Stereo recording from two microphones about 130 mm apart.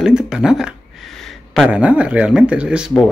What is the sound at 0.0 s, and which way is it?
Speech, 5° right (ahead or behind).